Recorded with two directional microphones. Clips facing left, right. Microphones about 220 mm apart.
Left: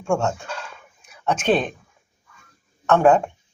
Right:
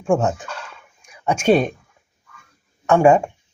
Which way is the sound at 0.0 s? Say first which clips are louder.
Right 3 dB; 15° right (ahead or behind).